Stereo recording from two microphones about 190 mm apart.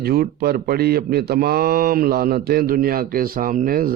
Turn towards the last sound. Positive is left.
turn(degrees=-50)  # may be behind; listen again after turning